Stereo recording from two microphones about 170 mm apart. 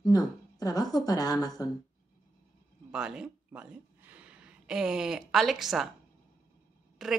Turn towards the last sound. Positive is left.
turn(degrees=0)  # may be behind; listen again after turning